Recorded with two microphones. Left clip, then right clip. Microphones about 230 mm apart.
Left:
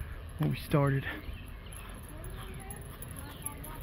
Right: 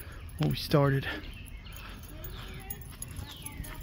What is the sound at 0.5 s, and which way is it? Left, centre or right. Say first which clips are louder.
Speech: right 4 dB; right.